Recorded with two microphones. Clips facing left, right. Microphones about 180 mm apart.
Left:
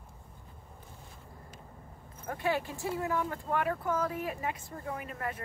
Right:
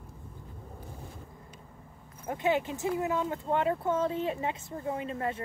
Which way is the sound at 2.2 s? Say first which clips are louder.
Right 4 dB; 20° right (ahead or behind).